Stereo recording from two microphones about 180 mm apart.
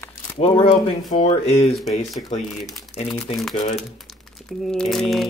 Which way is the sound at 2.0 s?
Centre (ahead or behind).